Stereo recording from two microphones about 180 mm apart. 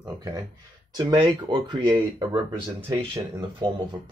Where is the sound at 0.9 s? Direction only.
25° right (ahead or behind).